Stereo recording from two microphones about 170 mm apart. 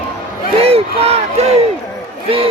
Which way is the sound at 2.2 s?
35° right (ahead or behind).